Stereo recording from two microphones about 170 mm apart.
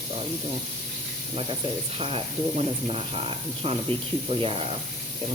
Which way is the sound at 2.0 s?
35° right (ahead or behind).